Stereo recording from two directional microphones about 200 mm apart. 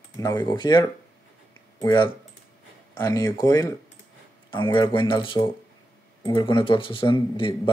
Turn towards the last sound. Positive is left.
turn(degrees=25)  # may be behind; listen again after turning